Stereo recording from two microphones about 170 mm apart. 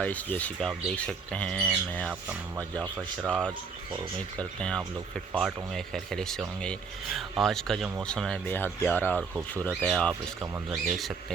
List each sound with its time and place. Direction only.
0.0 s speech: 10° left (ahead or behind)
2.8 s speech: 10° right (ahead or behind)
3.2 s speech: 5° left (ahead or behind)
10.4 s speech: 20° right (ahead or behind)
10.8 s speech: centre (ahead or behind)